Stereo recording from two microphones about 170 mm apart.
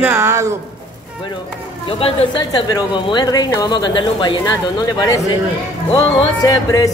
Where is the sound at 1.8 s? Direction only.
35° left (ahead or behind).